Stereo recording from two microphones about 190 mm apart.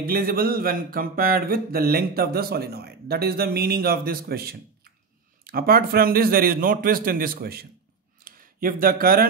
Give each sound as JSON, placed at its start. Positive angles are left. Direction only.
{"t": 0.0, "sound": "speech", "side_deg": -50}